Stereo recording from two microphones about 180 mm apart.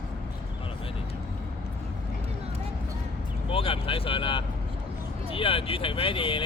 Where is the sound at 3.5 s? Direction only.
30° left (ahead or behind).